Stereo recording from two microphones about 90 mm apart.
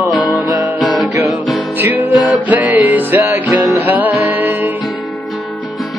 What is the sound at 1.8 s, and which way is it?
Music, 20° right (ahead or behind).